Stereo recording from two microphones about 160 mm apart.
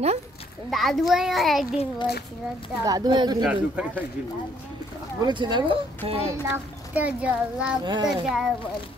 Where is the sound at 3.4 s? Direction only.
10° right (ahead or behind).